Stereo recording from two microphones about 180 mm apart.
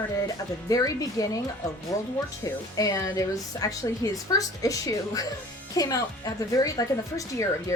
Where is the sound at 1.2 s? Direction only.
20° left (ahead or behind).